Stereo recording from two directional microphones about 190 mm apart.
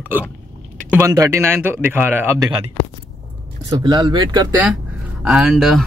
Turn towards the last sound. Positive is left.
turn(degrees=0)  # may be behind; listen again after turning